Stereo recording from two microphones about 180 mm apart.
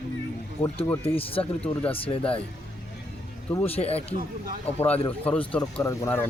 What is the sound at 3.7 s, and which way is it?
Speech, 35° left (ahead or behind).